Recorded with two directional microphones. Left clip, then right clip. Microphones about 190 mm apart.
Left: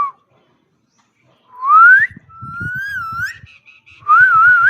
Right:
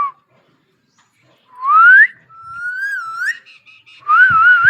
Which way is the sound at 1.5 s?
60° left (ahead or behind).